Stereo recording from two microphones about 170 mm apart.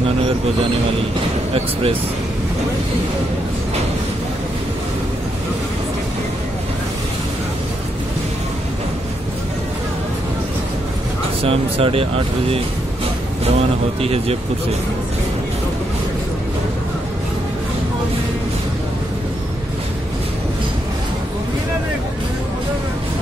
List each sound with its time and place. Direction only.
1.5 s speech: 35° right (ahead or behind)
11.4 s speech: 35° right (ahead or behind)
14.0 s speech: 35° right (ahead or behind)